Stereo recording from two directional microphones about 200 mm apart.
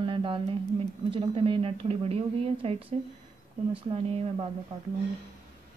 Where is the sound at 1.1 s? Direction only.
25° right (ahead or behind).